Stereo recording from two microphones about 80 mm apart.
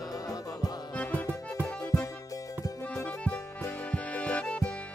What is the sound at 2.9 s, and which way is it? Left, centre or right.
Music, centre.